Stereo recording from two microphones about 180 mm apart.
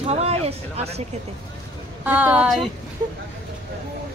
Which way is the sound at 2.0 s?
10° right (ahead or behind).